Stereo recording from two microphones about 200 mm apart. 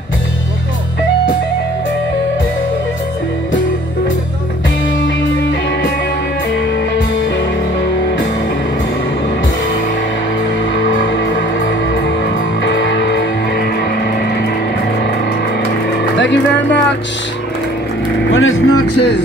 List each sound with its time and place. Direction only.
10.8 s music: 70° left (ahead or behind)
12.6 s music: 60° left (ahead or behind)
16.2 s music: 60° left (ahead or behind)
18.3 s a sound: 90° left